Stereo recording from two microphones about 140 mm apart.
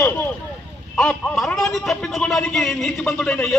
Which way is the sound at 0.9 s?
5° left (ahead or behind).